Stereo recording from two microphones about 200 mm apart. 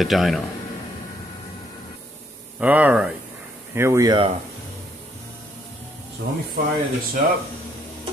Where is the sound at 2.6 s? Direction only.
5° right (ahead or behind).